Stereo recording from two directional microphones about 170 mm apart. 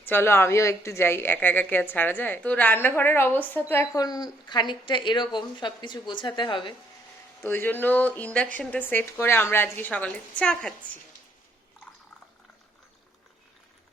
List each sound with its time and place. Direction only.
0.0 s a woman's voice: 15° left (ahead or behind); by 6.7 s 30° left (ahead or behind)
7.4 s a woman's voice: 10° left (ahead or behind)